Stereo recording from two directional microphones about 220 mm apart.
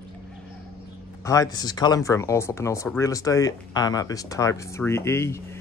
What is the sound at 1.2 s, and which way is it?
Speech, 15° left (ahead or behind).